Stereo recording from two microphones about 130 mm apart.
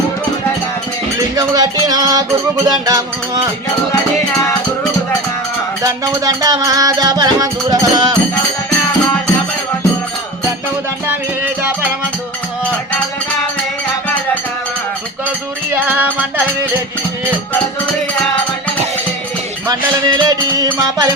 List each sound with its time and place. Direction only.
1.4 s music: 30° right (ahead or behind)
6.2 s music: 25° right (ahead or behind)
15.7 s music: 15° right (ahead or behind)
20.1 s music: 30° right (ahead or behind)